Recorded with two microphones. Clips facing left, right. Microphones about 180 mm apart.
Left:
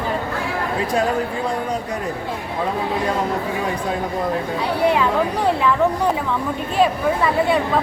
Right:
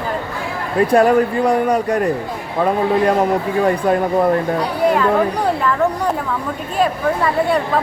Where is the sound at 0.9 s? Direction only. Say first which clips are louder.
Right 9 dB; 60° right (ahead or behind).